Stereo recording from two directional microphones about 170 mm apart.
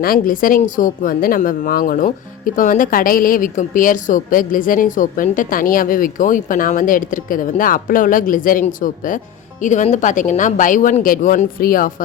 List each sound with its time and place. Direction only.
0.0 s a woman's voice: 55° left (ahead or behind)